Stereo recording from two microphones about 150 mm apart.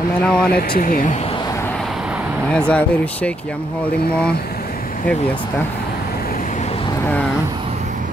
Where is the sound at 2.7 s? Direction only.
10° left (ahead or behind).